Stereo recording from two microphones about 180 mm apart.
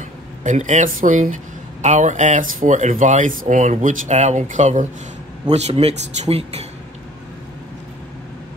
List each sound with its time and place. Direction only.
0.4 s speech: 40° right (ahead or behind)